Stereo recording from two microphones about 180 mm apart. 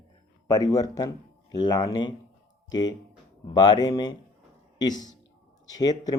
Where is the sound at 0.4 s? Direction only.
20° left (ahead or behind).